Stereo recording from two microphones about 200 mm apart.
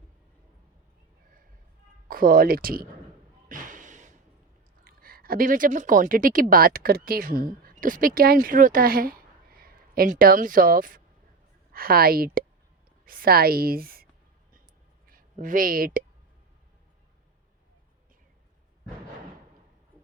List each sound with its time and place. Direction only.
2.0 s speech: 45° right (ahead or behind)
3.5 s a sound: 40° right (ahead or behind)
4.8 s a woman's voice: 45° right (ahead or behind)
15.1 s speech: 45° right (ahead or behind)